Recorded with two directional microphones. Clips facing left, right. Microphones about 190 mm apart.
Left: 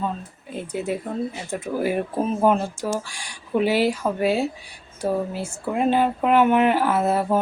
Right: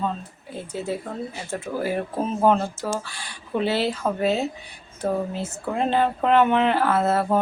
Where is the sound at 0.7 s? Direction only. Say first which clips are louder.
Left 2 dB; 15° left (ahead or behind).